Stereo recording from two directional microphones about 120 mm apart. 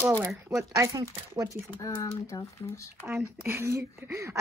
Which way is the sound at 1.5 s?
25° left (ahead or behind).